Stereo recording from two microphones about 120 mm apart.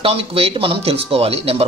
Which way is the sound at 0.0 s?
50° right (ahead or behind).